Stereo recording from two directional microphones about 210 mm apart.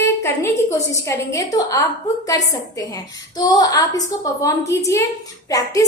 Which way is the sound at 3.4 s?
20° left (ahead or behind).